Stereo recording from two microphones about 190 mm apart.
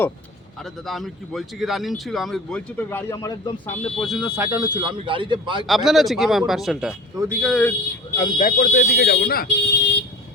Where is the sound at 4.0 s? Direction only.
Centre (ahead or behind); by 5.6 s 25° right (ahead or behind).